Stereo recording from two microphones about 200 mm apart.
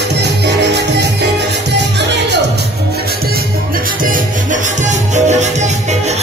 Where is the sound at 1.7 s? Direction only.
60° right (ahead or behind).